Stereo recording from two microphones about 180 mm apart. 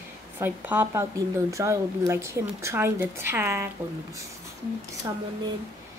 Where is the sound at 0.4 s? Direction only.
10° right (ahead or behind).